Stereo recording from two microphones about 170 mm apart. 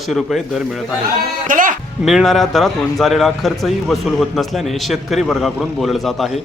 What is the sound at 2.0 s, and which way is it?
A man's voice, centre (ahead or behind).